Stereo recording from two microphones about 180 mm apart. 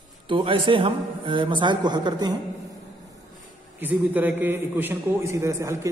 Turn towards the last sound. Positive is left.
turn(degrees=-15)  # may be behind; listen again after turning